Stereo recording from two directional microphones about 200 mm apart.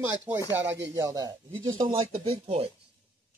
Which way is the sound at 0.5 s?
10° right (ahead or behind).